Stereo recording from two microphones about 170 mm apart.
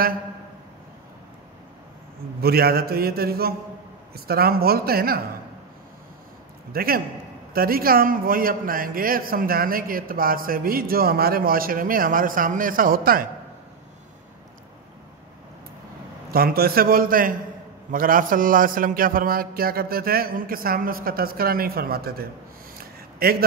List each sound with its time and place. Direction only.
2.4 s a man's voice: 65° right (ahead or behind)
6.7 s a man's voice: 60° right (ahead or behind)
16.3 s a man's voice: 60° right (ahead or behind)
22.8 s a sound: 60° right (ahead or behind)